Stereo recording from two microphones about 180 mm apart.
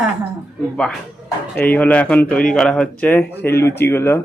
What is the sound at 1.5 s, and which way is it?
Speech, 10° left (ahead or behind).